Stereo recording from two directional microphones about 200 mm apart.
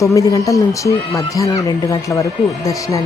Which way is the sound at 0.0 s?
15° left (ahead or behind).